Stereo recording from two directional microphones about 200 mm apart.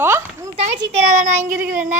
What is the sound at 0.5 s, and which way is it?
A child's voice, 30° right (ahead or behind).